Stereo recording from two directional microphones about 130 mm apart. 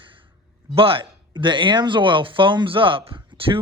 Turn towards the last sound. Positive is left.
turn(degrees=-45)  # may be behind; listen again after turning